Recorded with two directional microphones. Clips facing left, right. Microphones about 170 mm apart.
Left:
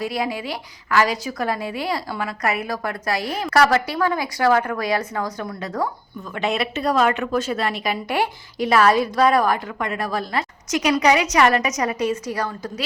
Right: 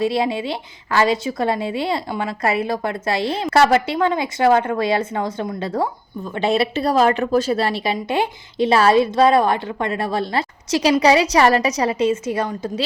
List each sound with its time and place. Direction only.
0.0 s a woman's voice: 25° right (ahead or behind)
7.9 s a woman's voice: 20° right (ahead or behind)